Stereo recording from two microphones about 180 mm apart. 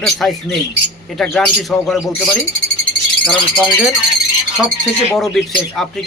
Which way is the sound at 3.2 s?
5° left (ahead or behind).